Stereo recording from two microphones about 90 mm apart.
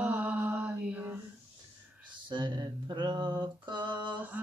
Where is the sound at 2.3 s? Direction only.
60° right (ahead or behind).